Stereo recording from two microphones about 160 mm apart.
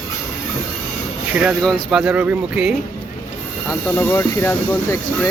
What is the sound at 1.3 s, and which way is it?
Speech, 10° right (ahead or behind).